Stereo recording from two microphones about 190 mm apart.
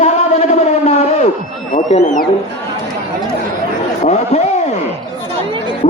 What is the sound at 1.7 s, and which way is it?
Speech, 40° left (ahead or behind).